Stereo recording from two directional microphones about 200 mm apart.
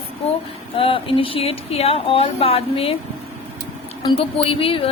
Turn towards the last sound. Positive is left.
turn(degrees=25)  # may be behind; listen again after turning